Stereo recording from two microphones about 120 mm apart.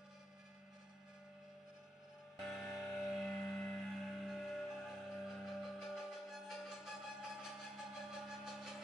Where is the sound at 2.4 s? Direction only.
Centre (ahead or behind).